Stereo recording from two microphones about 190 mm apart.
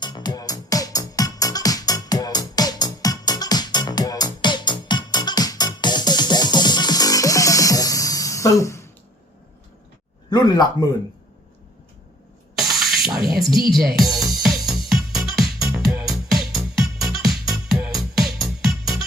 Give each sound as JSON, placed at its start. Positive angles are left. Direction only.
{"t": 0.0, "sound": "music", "side_deg": 20}
{"t": 10.2, "sound": "speech", "side_deg": 20}
{"t": 12.5, "sound": "a sound", "side_deg": 0}
{"t": 13.1, "sound": "music", "side_deg": 0}